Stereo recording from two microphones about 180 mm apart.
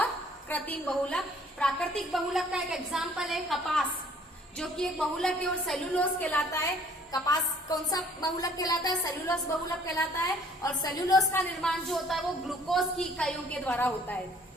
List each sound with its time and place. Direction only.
0.5 s a woman's voice: 5° left (ahead or behind)
10.6 s a woman's voice: 20° left (ahead or behind)
11.3 s a woman's voice: 5° left (ahead or behind)